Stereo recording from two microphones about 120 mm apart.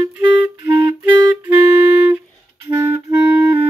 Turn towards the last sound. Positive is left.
turn(degrees=-20)  # may be behind; listen again after turning